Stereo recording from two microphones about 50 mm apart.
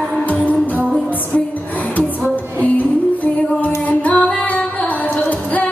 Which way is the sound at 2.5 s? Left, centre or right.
Left.